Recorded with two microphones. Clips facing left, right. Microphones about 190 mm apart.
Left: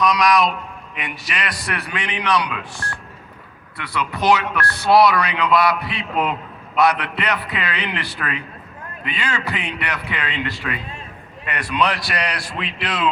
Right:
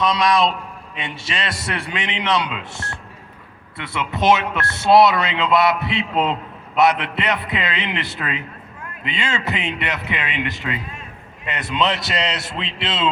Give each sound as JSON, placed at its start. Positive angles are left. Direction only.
{"t": 0.0, "sound": "speech", "side_deg": -25}